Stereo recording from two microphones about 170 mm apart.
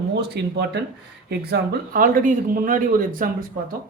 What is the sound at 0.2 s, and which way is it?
Speech, 80° right.